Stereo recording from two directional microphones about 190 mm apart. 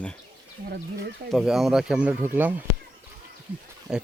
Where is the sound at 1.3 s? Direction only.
Centre (ahead or behind).